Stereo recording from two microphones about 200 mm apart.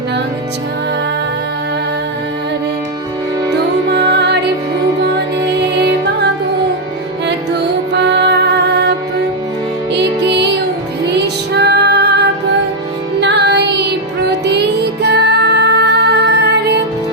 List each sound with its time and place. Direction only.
3.8 s music: 55° right (ahead or behind)
5.5 s music: 55° right (ahead or behind)
7.9 s music: 60° right (ahead or behind)